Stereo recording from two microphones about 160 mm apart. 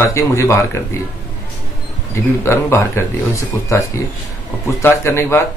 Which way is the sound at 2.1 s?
15° left (ahead or behind).